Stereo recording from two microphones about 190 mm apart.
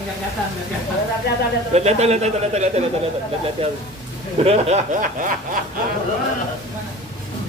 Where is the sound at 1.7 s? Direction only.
35° right (ahead or behind).